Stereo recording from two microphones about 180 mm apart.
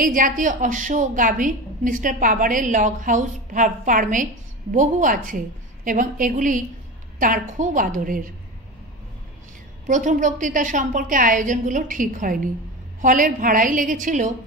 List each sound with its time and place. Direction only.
0.0 s a woman's voice: 50° right (ahead or behind)
9.8 s a woman's voice: 45° right (ahead or behind)